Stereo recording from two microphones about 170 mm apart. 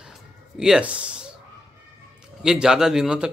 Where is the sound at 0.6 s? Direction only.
5° right (ahead or behind).